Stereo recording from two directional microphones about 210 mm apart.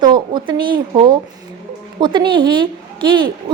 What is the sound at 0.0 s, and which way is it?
A woman's voice, 20° right (ahead or behind).